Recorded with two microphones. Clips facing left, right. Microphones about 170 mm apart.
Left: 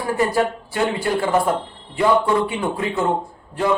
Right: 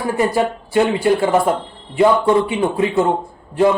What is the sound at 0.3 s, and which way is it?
Speech, 20° right (ahead or behind).